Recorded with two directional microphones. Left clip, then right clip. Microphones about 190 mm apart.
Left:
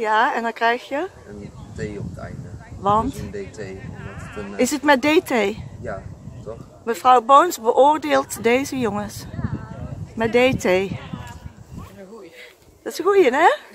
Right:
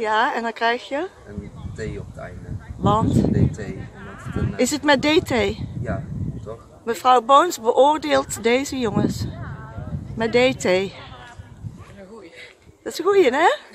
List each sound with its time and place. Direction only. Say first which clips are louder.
0.0 s speech: left 2 dB; centre (ahead or behind)
2.8 s speech: even; centre (ahead or behind)
4.0 s a sound: right 4 dB; 50° left (ahead or behind)
4.6 s speech: left 1 dB; centre (ahead or behind)
6.9 s speech: left 1 dB; centre (ahead or behind)
12.8 s speech: left 1 dB; centre (ahead or behind)